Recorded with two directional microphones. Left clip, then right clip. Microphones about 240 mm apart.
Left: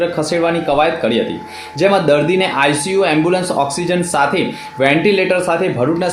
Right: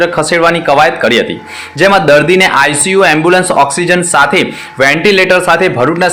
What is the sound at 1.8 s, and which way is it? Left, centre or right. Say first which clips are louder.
A man's voice: right 6 dB; centre.